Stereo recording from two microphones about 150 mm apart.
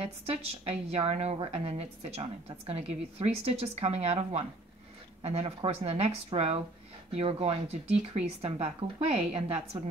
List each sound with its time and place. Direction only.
0.0 s a woman's voice: 40° right (ahead or behind)